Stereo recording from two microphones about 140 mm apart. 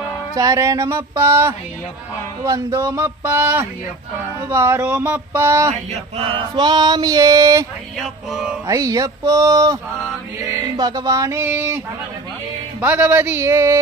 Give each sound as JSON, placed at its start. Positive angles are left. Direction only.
{"t": 0.3, "sound": "male singing", "side_deg": -25}
{"t": 5.7, "sound": "male singing", "side_deg": -50}
{"t": 8.0, "sound": "music", "side_deg": -5}
{"t": 8.6, "sound": "male singing", "side_deg": -25}
{"t": 12.8, "sound": "speech", "side_deg": -15}